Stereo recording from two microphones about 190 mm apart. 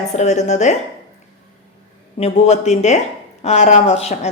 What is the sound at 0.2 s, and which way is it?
Speech, 35° left (ahead or behind).